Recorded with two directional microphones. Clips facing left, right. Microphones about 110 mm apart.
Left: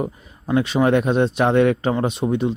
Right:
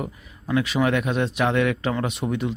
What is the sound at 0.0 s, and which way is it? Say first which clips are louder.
Speech: left 6 dB; 30° left (ahead or behind).